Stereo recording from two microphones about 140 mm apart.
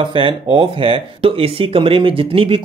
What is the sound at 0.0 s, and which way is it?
Speech, 35° right (ahead or behind).